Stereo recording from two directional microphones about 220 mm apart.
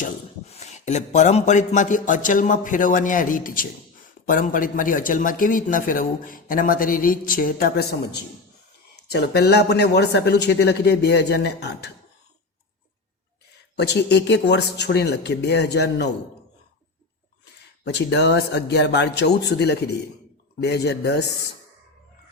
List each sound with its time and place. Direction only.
0.0 s speech: 30° left (ahead or behind); by 11.9 s 50° left (ahead or behind)
13.7 s speech: 50° left (ahead or behind)
17.4 s speech: 50° left (ahead or behind)